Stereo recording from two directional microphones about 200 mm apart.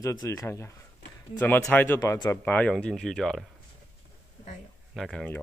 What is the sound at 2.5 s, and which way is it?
Speech, 5° left (ahead or behind).